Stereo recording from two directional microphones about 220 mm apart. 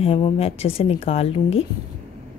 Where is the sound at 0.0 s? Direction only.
25° left (ahead or behind).